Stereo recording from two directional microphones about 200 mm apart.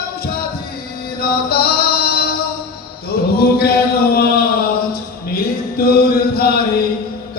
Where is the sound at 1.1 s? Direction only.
50° left (ahead or behind).